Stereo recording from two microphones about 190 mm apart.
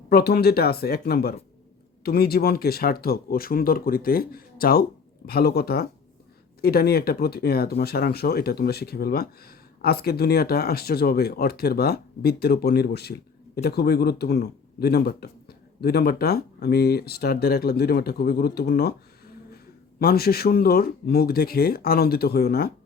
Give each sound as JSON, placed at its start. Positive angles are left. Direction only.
{"t": 0.1, "sound": "speech", "side_deg": 55}
{"t": 20.0, "sound": "speech", "side_deg": 55}